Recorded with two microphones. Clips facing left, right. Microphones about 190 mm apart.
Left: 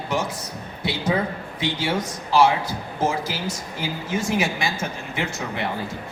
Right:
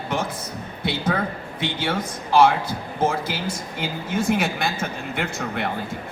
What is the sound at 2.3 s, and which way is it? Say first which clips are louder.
Speech: right 1 dB; 55° right (ahead or behind).